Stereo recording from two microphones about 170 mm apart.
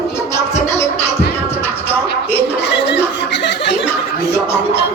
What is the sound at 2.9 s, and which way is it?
Chuckle, 90° left.